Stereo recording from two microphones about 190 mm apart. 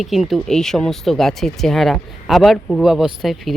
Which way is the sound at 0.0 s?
Centre (ahead or behind).